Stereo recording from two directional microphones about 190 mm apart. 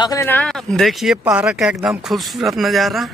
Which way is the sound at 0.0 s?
15° left (ahead or behind).